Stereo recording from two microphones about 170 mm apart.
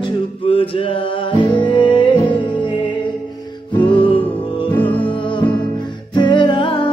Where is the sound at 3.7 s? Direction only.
30° left (ahead or behind).